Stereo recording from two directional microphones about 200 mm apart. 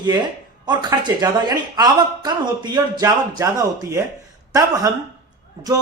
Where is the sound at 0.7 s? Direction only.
20° right (ahead or behind).